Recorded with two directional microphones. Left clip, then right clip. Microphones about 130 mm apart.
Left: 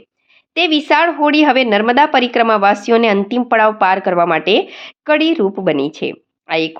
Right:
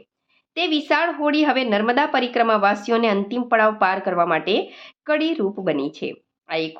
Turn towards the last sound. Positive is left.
turn(degrees=45)  # may be behind; listen again after turning